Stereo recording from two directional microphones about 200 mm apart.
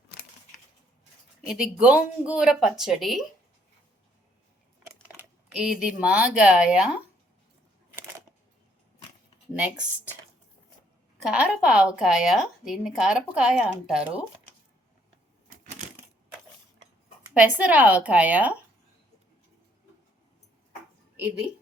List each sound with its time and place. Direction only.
1.5 s a woman's voice: 5° right (ahead or behind)
5.0 s speech: 5° right (ahead or behind)
11.2 s a woman's voice: 5° right (ahead or behind)
17.3 s a woman's voice: 5° right (ahead or behind)